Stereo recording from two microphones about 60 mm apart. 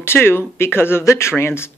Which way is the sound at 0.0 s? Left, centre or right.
Left.